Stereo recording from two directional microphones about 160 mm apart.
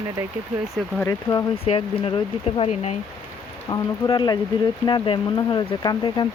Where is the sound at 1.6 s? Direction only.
35° left (ahead or behind).